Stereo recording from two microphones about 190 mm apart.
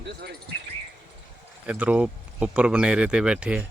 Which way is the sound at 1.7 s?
5° right (ahead or behind).